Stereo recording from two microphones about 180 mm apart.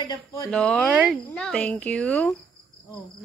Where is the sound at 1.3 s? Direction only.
5° left (ahead or behind).